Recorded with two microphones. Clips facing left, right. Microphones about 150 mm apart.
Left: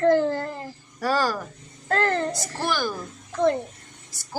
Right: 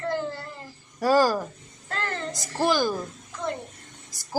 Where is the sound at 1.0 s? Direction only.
25° right (ahead or behind).